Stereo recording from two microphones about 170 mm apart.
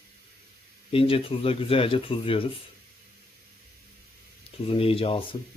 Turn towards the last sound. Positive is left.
turn(degrees=30)  # may be behind; listen again after turning